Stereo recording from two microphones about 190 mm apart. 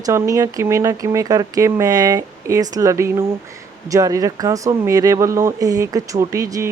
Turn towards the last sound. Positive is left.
turn(degrees=-15)  # may be behind; listen again after turning